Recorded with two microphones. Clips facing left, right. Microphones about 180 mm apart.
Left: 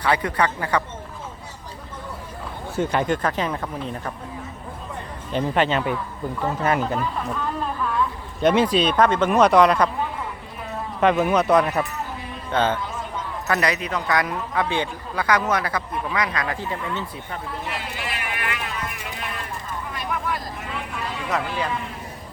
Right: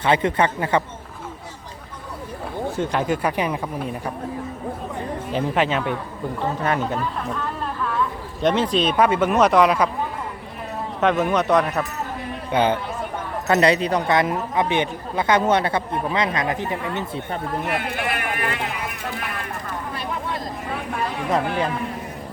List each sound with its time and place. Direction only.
0.0 s speech: 25° right (ahead or behind)
2.7 s speech: centre (ahead or behind)
5.3 s speech: 5° right (ahead or behind)
8.5 s speech: 10° left (ahead or behind)
8.8 s speech: 5° right (ahead or behind)
11.0 s speech: 5° left (ahead or behind)
12.5 s speech: 10° right (ahead or behind)
12.8 s a sound: 60° right (ahead or behind)
13.5 s speech: 30° right (ahead or behind)
17.4 s speech: 55° right (ahead or behind)
20.7 s a sound: 60° right (ahead or behind)
21.4 s speech: 55° right (ahead or behind)